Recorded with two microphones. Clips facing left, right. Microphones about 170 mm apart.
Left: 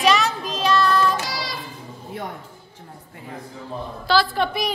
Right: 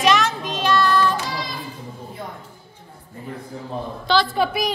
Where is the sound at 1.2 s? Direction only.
90° left.